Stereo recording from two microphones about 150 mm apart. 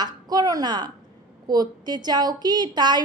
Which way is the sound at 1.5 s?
25° right (ahead or behind).